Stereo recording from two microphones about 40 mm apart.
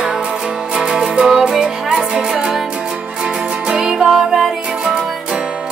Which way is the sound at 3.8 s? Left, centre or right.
Centre.